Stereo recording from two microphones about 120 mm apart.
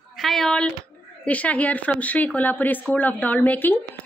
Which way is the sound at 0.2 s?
5° left (ahead or behind).